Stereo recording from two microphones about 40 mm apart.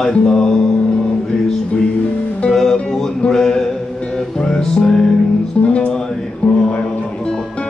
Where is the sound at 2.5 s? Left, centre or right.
Centre.